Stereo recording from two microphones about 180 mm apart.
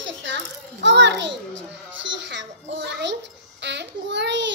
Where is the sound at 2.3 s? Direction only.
85° right.